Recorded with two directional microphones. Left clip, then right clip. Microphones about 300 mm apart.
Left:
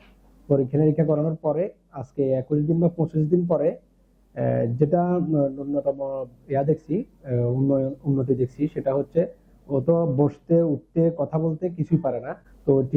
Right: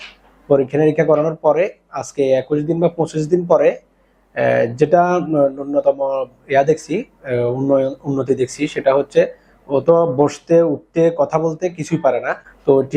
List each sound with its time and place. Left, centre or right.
0.5 s speech: centre
8.2 s speech: centre
10.2 s speech: centre
12.6 s speech: right